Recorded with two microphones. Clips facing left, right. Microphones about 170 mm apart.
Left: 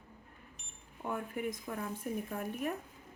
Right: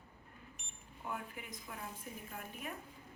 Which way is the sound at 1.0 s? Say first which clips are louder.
Left 8 dB; 50° left (ahead or behind).